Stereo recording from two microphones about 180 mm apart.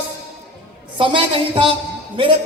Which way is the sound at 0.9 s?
30° right (ahead or behind).